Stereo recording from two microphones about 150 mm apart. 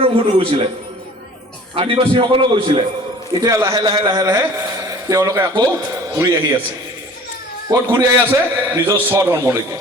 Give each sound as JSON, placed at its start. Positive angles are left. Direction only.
{"t": 0.0, "sound": "a man's voice", "side_deg": -40}
{"t": 1.7, "sound": "a man's voice", "side_deg": -40}
{"t": 3.4, "sound": "a man's voice", "side_deg": -25}
{"t": 7.7, "sound": "a man's voice", "side_deg": -20}